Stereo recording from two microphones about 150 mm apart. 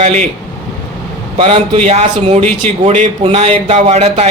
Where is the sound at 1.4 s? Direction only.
40° right (ahead or behind).